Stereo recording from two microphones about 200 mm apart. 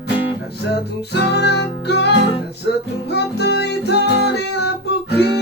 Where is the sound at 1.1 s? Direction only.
55° left (ahead or behind).